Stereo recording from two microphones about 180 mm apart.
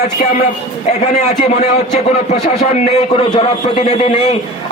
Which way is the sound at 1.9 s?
40° left (ahead or behind).